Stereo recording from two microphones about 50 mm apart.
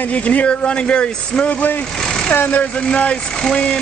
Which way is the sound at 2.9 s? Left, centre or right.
Left.